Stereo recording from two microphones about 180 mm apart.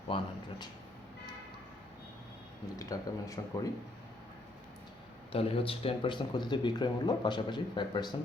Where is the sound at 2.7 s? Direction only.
20° left (ahead or behind).